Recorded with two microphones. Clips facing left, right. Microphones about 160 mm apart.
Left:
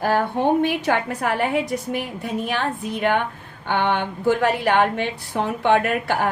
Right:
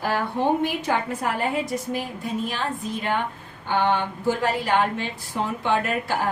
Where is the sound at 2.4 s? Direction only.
65° left (ahead or behind).